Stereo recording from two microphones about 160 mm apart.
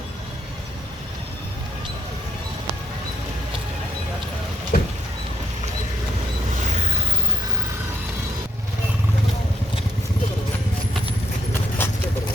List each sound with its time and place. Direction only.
4.7 s rodents: 65° left (ahead or behind)
6.7 s a sound: 45° right (ahead or behind)
11.8 s horse: 15° left (ahead or behind)